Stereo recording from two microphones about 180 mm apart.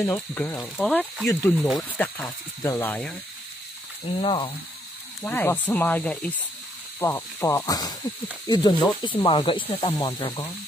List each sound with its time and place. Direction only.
0.0 s speech: 10° left (ahead or behind)
2.2 s speech: 20° left (ahead or behind)
4.2 s speech: 30° left (ahead or behind)
5.2 s speech: 10° left (ahead or behind)